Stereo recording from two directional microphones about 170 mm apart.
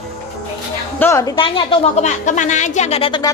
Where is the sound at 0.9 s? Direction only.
15° left (ahead or behind).